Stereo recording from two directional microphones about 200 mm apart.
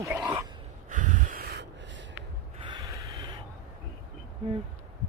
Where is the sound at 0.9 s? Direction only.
40° right (ahead or behind); by 2.1 s 65° right (ahead or behind).